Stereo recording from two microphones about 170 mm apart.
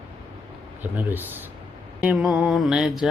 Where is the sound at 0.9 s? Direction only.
10° right (ahead or behind).